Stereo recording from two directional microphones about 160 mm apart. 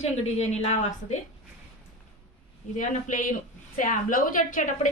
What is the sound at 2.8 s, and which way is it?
A woman's voice, 55° left (ahead or behind).